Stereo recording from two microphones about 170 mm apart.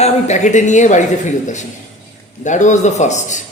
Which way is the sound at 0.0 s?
45° left (ahead or behind).